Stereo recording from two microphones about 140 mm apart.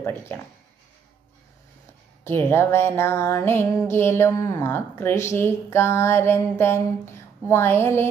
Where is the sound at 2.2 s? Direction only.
15° left (ahead or behind).